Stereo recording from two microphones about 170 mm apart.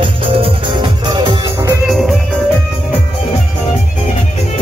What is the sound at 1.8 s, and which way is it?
Music, centre (ahead or behind).